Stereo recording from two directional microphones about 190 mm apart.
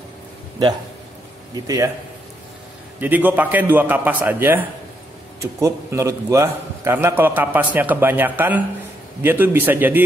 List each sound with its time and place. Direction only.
1.5 s a man's voice: 20° right (ahead or behind)
3.0 s a man's voice: 10° right (ahead or behind)